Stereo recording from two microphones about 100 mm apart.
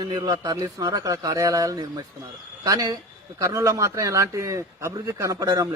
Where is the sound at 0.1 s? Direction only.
40° right (ahead or behind).